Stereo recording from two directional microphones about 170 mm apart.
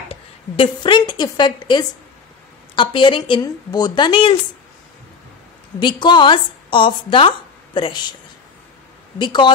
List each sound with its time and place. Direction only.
0.1 s a woman's voice: 30° left (ahead or behind)
5.8 s a woman's voice: 25° left (ahead or behind)
9.2 s a woman's voice: 25° left (ahead or behind)